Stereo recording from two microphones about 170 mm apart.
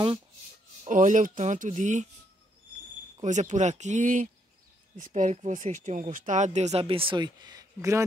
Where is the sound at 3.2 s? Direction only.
45° right (ahead or behind); by 8.0 s 15° right (ahead or behind).